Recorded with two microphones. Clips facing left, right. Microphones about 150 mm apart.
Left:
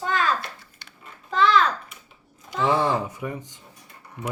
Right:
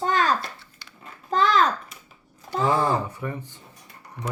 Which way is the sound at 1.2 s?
45° right (ahead or behind).